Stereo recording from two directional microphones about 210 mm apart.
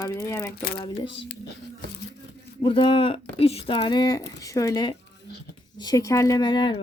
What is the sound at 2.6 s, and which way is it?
Speech, 25° left (ahead or behind).